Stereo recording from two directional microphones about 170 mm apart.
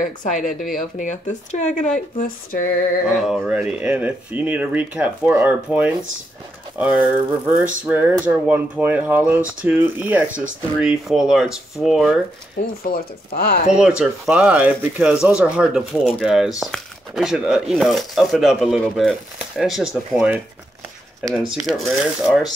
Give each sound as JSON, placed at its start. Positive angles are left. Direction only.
{"t": 0.0, "sound": "speech", "side_deg": 50}
{"t": 2.0, "sound": "speech", "side_deg": 55}
{"t": 3.2, "sound": "speech", "side_deg": -5}
{"t": 12.9, "sound": "speech", "side_deg": 60}
{"t": 13.7, "sound": "speech", "side_deg": -5}